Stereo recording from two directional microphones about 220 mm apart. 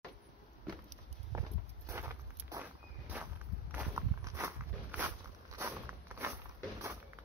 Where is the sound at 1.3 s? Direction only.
20° right (ahead or behind).